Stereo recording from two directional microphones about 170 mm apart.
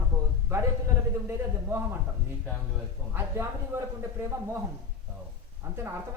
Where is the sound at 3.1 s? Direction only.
15° right (ahead or behind).